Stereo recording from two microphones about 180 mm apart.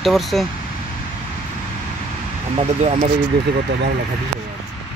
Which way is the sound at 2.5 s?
35° right (ahead or behind).